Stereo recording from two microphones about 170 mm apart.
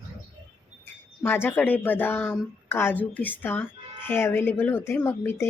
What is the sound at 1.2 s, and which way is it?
A woman's voice, 15° left (ahead or behind).